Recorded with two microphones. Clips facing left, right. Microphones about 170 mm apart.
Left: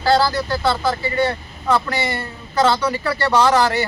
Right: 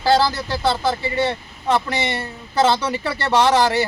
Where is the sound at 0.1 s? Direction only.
20° right (ahead or behind).